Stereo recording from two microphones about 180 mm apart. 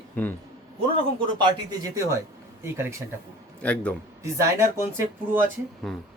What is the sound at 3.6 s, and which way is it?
Speech, 5° left (ahead or behind).